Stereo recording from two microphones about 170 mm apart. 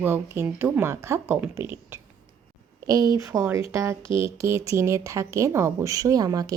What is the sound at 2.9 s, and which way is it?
A woman's voice, 20° right (ahead or behind).